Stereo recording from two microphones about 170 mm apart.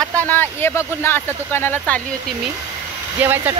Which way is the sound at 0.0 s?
10° left (ahead or behind).